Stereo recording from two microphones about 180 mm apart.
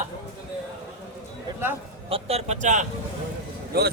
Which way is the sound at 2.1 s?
35° right (ahead or behind).